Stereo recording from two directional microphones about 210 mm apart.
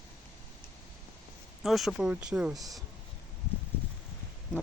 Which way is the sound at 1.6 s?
Centre (ahead or behind).